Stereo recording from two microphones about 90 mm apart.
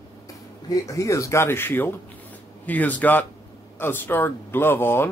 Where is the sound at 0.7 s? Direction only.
35° left (ahead or behind).